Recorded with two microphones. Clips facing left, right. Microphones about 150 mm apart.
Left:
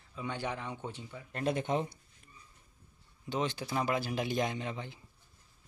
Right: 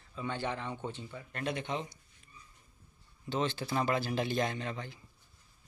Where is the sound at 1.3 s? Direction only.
40° left (ahead or behind).